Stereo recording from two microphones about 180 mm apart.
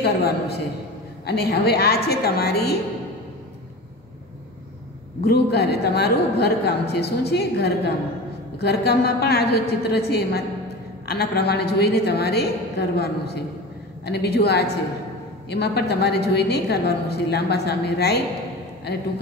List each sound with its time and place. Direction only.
0.0 s a woman's voice: 65° left (ahead or behind)
5.2 s a woman's voice: 65° left (ahead or behind)